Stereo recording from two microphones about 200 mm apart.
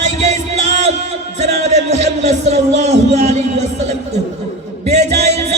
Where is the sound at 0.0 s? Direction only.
35° right (ahead or behind).